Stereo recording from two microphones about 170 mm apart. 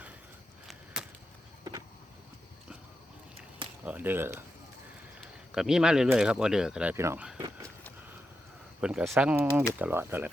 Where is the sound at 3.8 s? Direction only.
10° right (ahead or behind).